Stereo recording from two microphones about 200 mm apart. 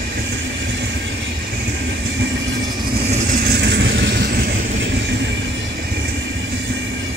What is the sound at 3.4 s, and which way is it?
Vehicle, 60° right (ahead or behind).